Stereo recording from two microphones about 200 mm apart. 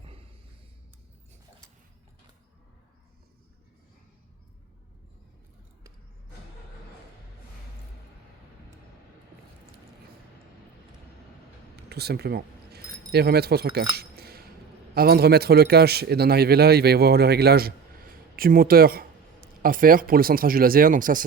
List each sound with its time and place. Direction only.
11.9 s a man's voice: 55° right (ahead or behind)